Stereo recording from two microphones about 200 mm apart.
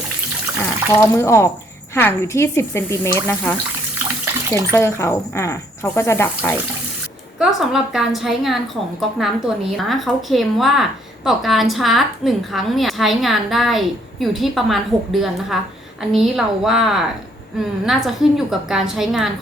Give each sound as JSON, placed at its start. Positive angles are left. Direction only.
{"t": 0.6, "sound": "speech", "side_deg": 10}
{"t": 4.4, "sound": "speech", "side_deg": -15}
{"t": 4.7, "sound": "speech", "side_deg": 15}
{"t": 7.3, "sound": "a woman's voice", "side_deg": 0}